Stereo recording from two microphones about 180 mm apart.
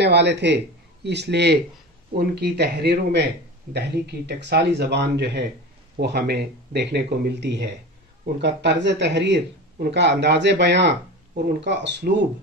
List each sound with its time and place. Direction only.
0.0 s a man's voice: 70° right (ahead or behind)